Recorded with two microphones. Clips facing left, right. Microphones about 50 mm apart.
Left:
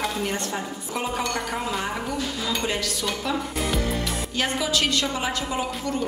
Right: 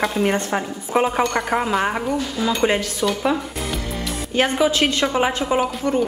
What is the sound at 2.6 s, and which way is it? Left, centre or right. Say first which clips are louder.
Speech: right 11 dB; right.